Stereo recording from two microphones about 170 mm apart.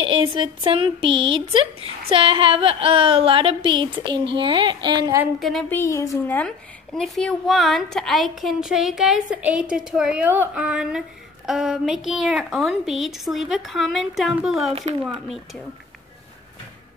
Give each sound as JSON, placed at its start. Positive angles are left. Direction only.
{"t": 0.0, "sound": "speech", "side_deg": -35}
{"t": 5.4, "sound": "speech", "side_deg": 0}
{"t": 5.7, "sound": "speech", "side_deg": 15}